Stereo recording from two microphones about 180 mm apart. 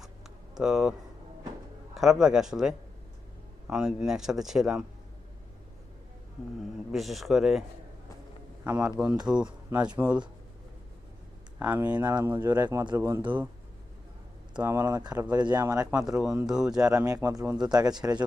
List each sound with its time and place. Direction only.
0.5 s a man's voice: 5° right (ahead or behind)
2.0 s a man's voice: 5° right (ahead or behind)
6.6 s a man's voice: centre (ahead or behind)
8.6 s speech: 10° right (ahead or behind)
11.6 s speech: 10° right (ahead or behind)
11.9 s speech: 20° right (ahead or behind)
13.0 s speech: 15° right (ahead or behind)
14.5 s speech: 15° right (ahead or behind)
16.0 s a man's voice: 5° right (ahead or behind)
16.9 s speech: 20° right (ahead or behind)